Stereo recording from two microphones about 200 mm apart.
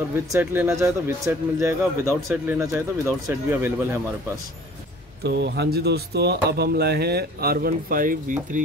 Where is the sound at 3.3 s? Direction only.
10° right (ahead or behind).